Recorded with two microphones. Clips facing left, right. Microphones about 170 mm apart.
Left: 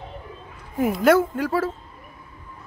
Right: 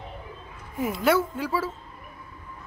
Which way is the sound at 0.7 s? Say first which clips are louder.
Left 5 dB; 50° left (ahead or behind).